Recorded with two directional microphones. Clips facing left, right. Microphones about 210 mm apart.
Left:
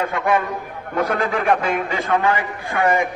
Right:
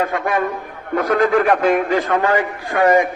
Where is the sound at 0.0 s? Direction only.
50° right (ahead or behind).